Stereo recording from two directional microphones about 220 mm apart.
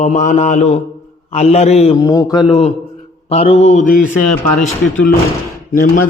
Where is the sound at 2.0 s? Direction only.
15° left (ahead or behind).